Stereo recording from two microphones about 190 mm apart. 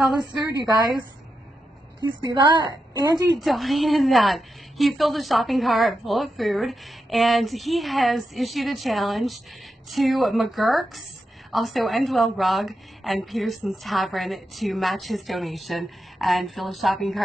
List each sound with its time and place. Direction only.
2.0 s a woman's voice: 25° right (ahead or behind)
3.3 s a woman's voice: centre (ahead or behind)